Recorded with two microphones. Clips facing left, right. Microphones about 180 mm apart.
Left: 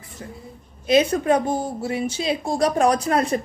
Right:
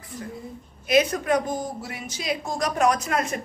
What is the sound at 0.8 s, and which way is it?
A woman's voice, 30° left (ahead or behind).